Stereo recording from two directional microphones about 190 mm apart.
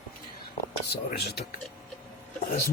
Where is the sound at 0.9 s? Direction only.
60° left (ahead or behind).